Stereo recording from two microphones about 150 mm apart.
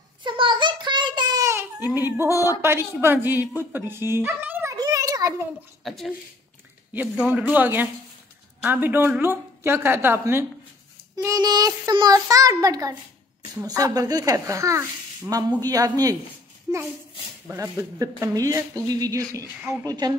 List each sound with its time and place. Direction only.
0.2 s child singing: 30° right (ahead or behind)
1.9 s speech: 15° right (ahead or behind)
4.7 s a sound: 25° right (ahead or behind)
5.9 s speech: centre (ahead or behind); by 16.2 s 25° right (ahead or behind)
17.5 s speech: 20° right (ahead or behind)